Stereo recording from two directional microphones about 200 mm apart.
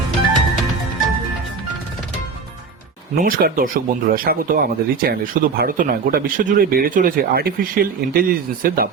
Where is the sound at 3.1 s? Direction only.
45° right (ahead or behind).